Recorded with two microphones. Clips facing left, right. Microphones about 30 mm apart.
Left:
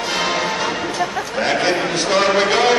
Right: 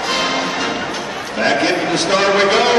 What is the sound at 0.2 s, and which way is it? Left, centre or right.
Music, right.